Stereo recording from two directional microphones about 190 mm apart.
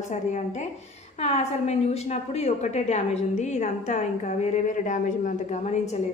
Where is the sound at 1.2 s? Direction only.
35° left (ahead or behind).